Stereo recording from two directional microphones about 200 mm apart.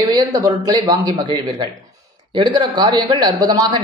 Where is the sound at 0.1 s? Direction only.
15° right (ahead or behind).